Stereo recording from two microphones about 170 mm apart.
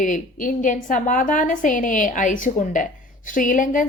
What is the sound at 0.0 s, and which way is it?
A woman's voice, 50° left (ahead or behind).